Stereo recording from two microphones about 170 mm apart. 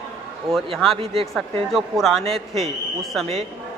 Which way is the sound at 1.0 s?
35° right (ahead or behind).